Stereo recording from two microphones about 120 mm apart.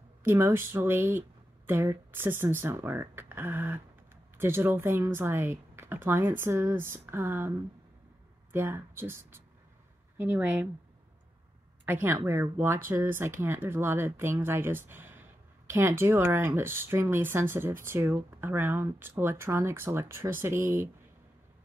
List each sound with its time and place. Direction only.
0.2 s speech: 20° right (ahead or behind)
11.8 s speech: 15° right (ahead or behind)